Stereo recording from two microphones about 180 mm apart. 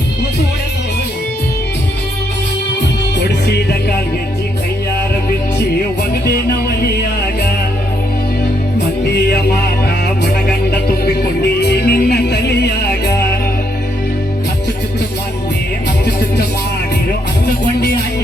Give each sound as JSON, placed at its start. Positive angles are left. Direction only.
{"t": 3.2, "sound": "music", "side_deg": 65}
{"t": 6.2, "sound": "music", "side_deg": 60}
{"t": 10.7, "sound": "music", "side_deg": 65}
{"t": 17.4, "sound": "music", "side_deg": 60}